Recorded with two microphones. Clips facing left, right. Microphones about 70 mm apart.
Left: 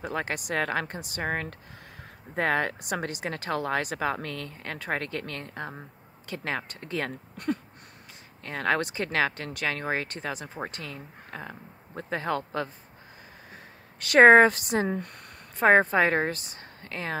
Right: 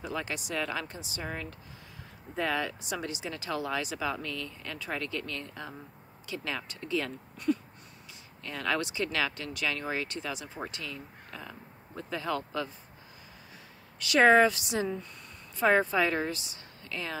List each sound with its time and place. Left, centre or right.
0.0 s a woman's voice: left